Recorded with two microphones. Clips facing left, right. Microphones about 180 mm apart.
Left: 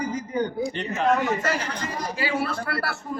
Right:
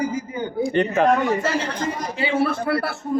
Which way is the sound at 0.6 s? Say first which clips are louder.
Right 7 dB; 55° right (ahead or behind).